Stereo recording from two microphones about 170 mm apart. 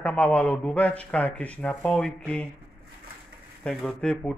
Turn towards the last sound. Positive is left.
turn(degrees=5)  # may be behind; listen again after turning